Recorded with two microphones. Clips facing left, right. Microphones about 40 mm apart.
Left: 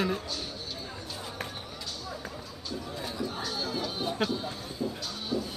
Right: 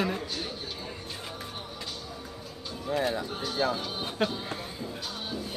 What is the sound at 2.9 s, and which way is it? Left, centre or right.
Speech, right.